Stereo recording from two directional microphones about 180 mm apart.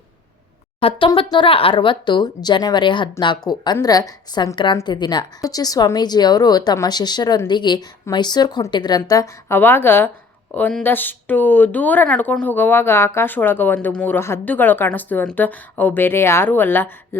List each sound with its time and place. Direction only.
0.8 s speech: 30° left (ahead or behind); by 17.2 s 10° left (ahead or behind)